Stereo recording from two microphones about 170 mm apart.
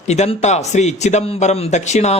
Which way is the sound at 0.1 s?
40° left (ahead or behind).